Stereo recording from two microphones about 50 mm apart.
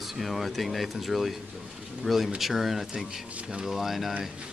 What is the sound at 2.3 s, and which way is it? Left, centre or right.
Speech, centre.